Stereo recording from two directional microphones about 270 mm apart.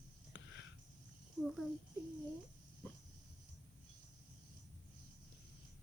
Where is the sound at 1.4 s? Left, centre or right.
Centre.